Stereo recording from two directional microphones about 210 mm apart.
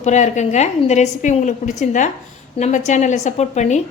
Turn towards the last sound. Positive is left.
turn(degrees=35)  # may be behind; listen again after turning